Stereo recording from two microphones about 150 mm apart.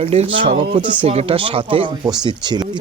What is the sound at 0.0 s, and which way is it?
Speech, 40° right (ahead or behind).